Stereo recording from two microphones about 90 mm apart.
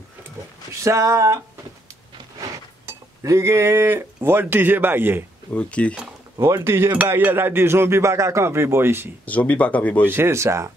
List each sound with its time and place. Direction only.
0.8 s speech: 35° right (ahead or behind)
2.9 s speech: 35° right (ahead or behind)
5.5 s speech: 15° left (ahead or behind)
6.4 s speech: 30° right (ahead or behind)
9.2 s speech: 15° left (ahead or behind)
10.1 s speech: 30° right (ahead or behind)